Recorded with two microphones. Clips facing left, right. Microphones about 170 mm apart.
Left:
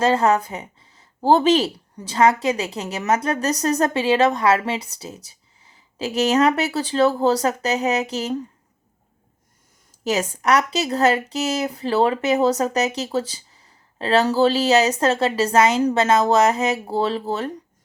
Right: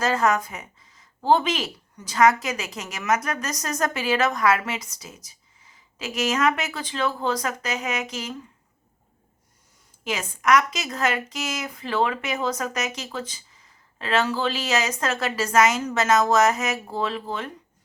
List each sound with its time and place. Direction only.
0.0 s speech: 30° left (ahead or behind)
10.0 s speech: 40° left (ahead or behind)